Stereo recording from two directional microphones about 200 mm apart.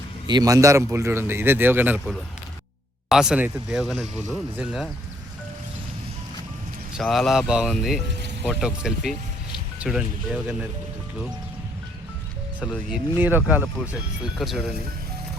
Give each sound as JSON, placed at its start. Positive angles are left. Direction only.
{"t": 0.3, "sound": "a man's voice", "side_deg": -20}
{"t": 6.9, "sound": "speech", "side_deg": 0}
{"t": 12.7, "sound": "a man's voice", "side_deg": -5}